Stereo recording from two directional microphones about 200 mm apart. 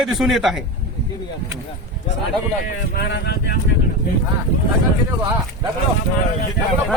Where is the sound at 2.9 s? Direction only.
55° left (ahead or behind).